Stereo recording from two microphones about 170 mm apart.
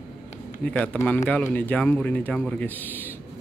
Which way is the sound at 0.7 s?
5° left (ahead or behind).